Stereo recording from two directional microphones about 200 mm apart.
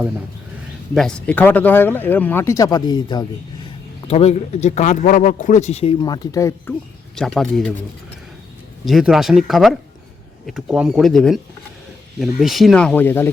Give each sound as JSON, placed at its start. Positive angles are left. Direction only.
{"t": 0.9, "sound": "speech", "side_deg": 5}
{"t": 4.0, "sound": "speech", "side_deg": 30}
{"t": 7.2, "sound": "speech", "side_deg": 0}
{"t": 8.8, "sound": "speech", "side_deg": 0}